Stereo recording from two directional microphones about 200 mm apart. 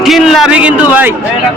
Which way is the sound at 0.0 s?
Centre (ahead or behind).